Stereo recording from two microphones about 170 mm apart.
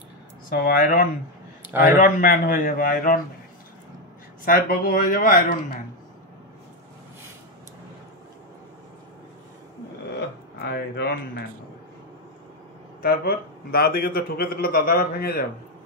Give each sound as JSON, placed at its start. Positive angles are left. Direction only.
{"t": 0.5, "sound": "a man's voice", "side_deg": 60}
{"t": 1.7, "sound": "a man's voice", "side_deg": -10}
{"t": 2.0, "sound": "a man's voice", "side_deg": 50}
{"t": 4.5, "sound": "a man's voice", "side_deg": 60}
{"t": 10.1, "sound": "speech", "side_deg": 80}
{"t": 13.0, "sound": "a man's voice", "side_deg": 65}